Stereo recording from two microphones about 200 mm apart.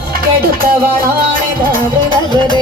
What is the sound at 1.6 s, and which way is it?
Music, 45° right (ahead or behind).